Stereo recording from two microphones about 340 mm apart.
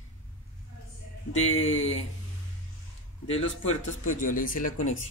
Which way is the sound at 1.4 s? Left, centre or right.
Left.